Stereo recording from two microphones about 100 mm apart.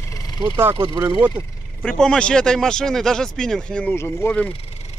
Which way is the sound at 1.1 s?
15° right (ahead or behind).